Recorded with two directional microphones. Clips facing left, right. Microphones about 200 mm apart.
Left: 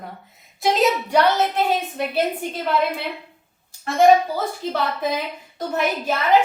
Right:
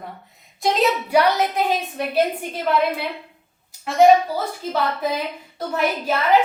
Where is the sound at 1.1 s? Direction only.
10° right (ahead or behind).